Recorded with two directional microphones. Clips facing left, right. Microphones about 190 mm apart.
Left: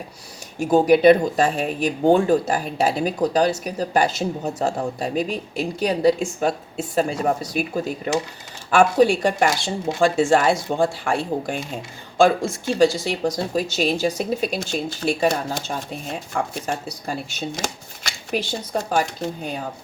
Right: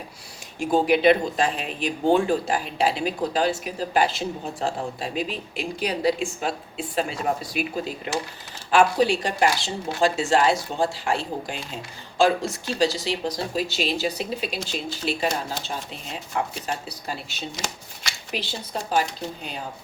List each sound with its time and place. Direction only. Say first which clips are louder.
0.6 s speech: left 5 dB; 45° left (ahead or behind)